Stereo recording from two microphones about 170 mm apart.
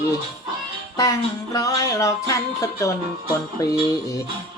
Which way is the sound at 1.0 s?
20° left (ahead or behind).